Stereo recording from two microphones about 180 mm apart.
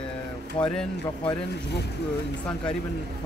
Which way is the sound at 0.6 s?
25° left (ahead or behind).